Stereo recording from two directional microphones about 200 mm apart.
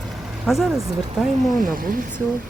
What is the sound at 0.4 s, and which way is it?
Speech, centre (ahead or behind).